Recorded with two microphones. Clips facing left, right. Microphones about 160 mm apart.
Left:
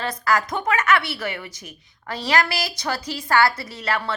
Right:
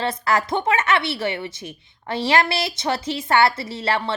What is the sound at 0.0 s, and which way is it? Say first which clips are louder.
Speech: right 1 dB; 25° right (ahead or behind).